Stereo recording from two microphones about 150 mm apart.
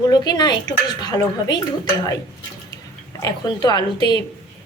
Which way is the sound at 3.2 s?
25° left (ahead or behind).